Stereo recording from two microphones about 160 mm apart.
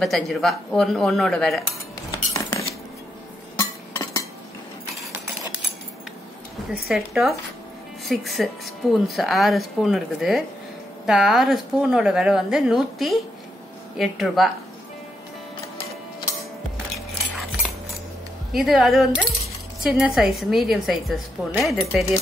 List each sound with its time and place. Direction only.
0.0 s speech: centre (ahead or behind)
2.0 s cutlery: 20° left (ahead or behind)
3.5 s a sound: 20° left (ahead or behind)
6.7 s speech: centre (ahead or behind)
18.5 s speech: centre (ahead or behind)